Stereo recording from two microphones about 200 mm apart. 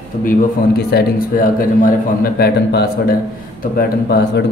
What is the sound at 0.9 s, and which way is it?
Speech, 50° left (ahead or behind).